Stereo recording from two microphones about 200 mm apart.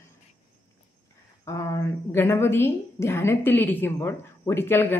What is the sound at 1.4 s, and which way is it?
A woman's voice, 15° left (ahead or behind).